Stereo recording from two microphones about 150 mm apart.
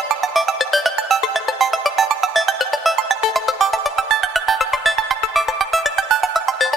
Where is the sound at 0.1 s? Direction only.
Centre (ahead or behind).